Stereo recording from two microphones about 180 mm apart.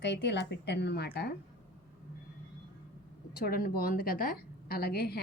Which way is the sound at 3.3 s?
55° left (ahead or behind).